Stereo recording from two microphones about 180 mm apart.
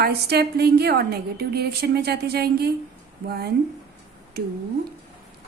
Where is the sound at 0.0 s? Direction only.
65° right (ahead or behind).